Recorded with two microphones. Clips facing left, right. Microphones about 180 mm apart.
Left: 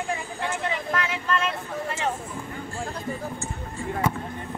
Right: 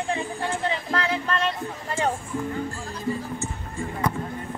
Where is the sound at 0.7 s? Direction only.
30° right (ahead or behind).